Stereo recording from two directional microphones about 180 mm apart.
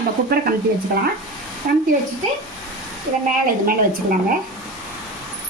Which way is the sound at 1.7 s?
50° right (ahead or behind).